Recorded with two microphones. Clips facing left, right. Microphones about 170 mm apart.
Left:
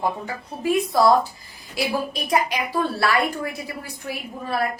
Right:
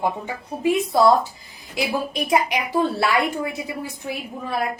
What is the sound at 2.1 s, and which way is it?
A woman's voice, 20° right (ahead or behind).